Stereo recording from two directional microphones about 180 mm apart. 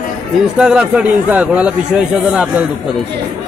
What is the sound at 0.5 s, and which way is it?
A man's voice, 5° right (ahead or behind).